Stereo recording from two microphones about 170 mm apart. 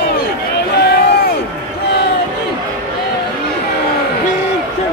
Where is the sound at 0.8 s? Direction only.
70° left (ahead or behind).